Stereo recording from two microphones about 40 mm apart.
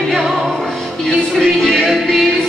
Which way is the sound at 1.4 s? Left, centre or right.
Centre.